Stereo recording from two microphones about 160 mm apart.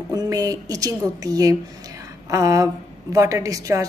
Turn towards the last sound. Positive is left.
turn(degrees=-20)  # may be behind; listen again after turning